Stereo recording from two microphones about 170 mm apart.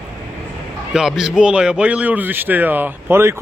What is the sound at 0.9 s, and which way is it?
Speech, 5° right (ahead or behind).